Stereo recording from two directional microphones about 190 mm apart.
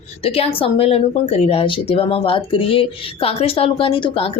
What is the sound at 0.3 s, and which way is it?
Speech, 30° left (ahead or behind).